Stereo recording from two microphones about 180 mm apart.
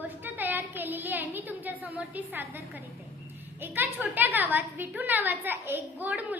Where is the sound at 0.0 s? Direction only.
10° right (ahead or behind).